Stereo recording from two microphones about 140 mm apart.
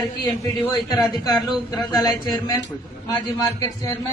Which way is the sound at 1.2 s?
30° left (ahead or behind).